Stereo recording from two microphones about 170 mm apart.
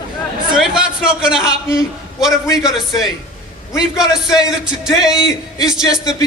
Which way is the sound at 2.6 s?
Centre (ahead or behind).